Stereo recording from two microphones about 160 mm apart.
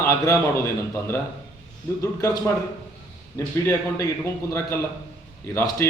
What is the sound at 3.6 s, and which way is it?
Speech, 15° left (ahead or behind).